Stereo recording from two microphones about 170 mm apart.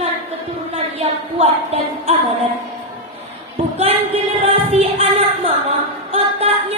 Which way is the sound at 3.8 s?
35° right (ahead or behind).